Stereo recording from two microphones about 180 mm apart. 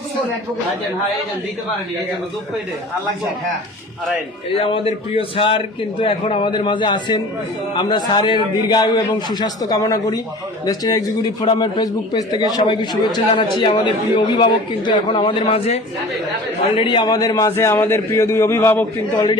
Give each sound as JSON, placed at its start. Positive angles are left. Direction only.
{"t": 4.5, "sound": "a man's voice", "side_deg": 30}